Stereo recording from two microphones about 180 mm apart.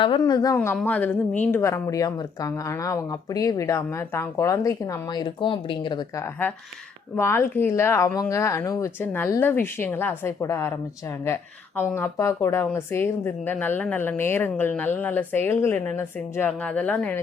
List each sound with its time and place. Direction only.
0.0 s a woman's voice: 25° left (ahead or behind)
11.8 s a woman's voice: 10° left (ahead or behind)